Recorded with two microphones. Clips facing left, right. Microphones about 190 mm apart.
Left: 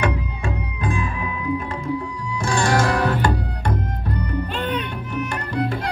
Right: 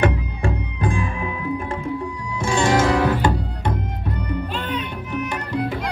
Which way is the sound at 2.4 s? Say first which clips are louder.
Right 2 dB; 20° right (ahead or behind).